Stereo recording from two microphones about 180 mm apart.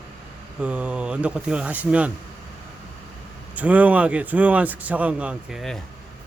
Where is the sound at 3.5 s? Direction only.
10° right (ahead or behind).